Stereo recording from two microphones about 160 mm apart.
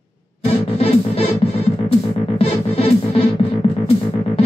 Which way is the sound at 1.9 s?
35° left (ahead or behind).